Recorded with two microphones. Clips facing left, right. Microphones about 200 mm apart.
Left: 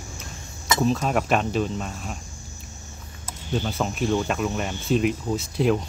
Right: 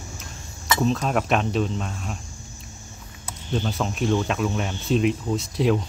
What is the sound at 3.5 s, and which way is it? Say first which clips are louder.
Speech: even; 5° left (ahead or behind).